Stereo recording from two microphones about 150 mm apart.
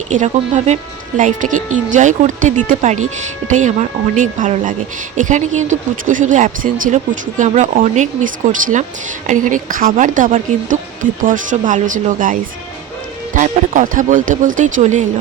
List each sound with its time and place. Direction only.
0.1 s speech: 55° right (ahead or behind)